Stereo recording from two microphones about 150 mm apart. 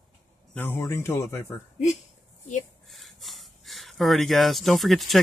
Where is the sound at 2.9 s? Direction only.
Centre (ahead or behind).